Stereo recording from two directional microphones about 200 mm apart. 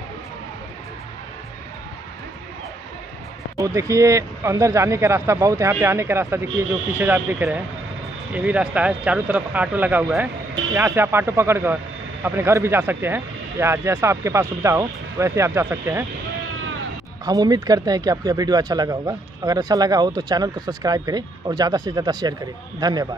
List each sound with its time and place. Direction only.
3.5 s speech: 15° right (ahead or behind)
17.2 s speech: 20° right (ahead or behind)